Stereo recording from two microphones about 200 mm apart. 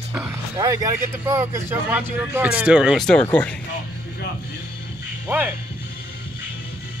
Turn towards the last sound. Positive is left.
turn(degrees=-10)  # may be behind; listen again after turning